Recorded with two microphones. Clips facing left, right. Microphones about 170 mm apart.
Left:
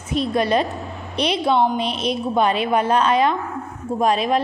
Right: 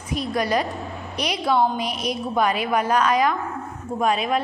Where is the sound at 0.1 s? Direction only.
25° left (ahead or behind).